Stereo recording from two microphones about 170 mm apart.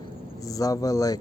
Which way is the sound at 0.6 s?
20° left (ahead or behind).